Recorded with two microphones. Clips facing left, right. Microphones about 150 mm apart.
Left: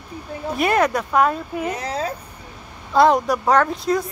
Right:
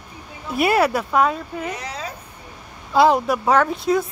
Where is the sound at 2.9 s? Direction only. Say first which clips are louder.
Even; centre (ahead or behind).